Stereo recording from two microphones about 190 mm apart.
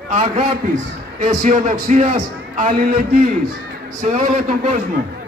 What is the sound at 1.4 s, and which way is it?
A man's voice, 45° right (ahead or behind).